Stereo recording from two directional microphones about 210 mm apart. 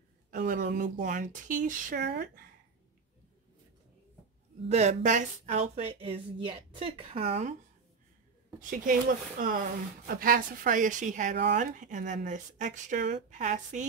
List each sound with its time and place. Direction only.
0.3 s speech: 40° right (ahead or behind)
2.0 s speech: 50° right (ahead or behind)
4.6 s speech: 30° right (ahead or behind)
8.5 s speech: 40° right (ahead or behind)